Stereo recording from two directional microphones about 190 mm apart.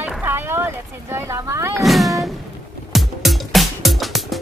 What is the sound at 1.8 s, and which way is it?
Speech, centre (ahead or behind).